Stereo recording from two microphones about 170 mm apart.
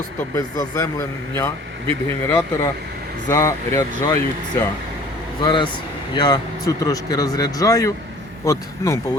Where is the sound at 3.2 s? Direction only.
20° left (ahead or behind).